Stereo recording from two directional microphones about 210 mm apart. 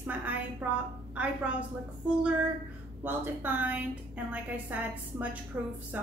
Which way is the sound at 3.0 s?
10° right (ahead or behind).